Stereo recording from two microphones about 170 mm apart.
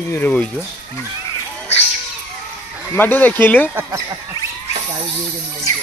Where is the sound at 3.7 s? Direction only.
15° right (ahead or behind).